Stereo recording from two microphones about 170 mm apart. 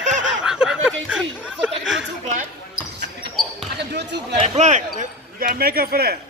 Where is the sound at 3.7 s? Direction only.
90° right.